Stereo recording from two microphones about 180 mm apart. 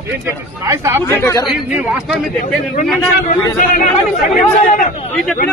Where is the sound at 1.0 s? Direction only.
15° left (ahead or behind).